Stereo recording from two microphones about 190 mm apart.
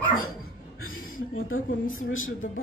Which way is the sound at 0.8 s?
90° left.